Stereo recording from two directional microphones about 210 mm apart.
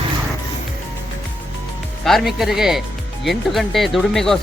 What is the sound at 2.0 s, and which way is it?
Speech, centre (ahead or behind).